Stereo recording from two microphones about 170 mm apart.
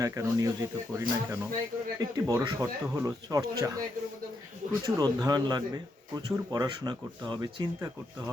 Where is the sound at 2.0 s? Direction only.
20° right (ahead or behind).